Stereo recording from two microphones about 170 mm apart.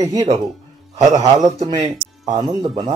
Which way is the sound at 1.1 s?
20° right (ahead or behind).